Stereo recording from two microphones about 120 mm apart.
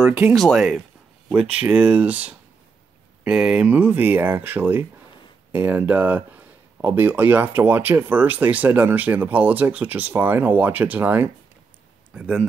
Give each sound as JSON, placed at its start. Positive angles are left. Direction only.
{"t": 0.3, "sound": "speech", "side_deg": 0}